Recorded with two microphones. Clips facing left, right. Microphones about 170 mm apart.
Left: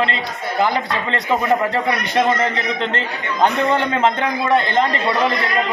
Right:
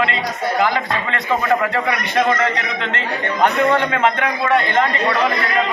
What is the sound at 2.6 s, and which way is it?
A man's voice, 35° left (ahead or behind).